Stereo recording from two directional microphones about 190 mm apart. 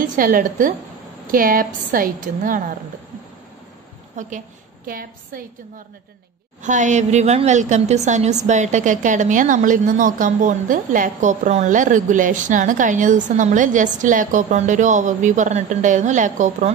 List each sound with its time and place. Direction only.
0.0 s a woman's voice: 45° right (ahead or behind)
4.2 s a woman's voice: 40° right (ahead or behind)
6.6 s a woman's voice: 40° right (ahead or behind)